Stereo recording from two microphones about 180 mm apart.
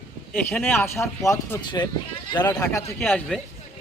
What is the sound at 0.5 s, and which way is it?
A man's voice, 10° left (ahead or behind).